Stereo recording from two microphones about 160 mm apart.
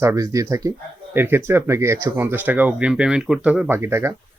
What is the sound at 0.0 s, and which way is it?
Speech, 20° right (ahead or behind).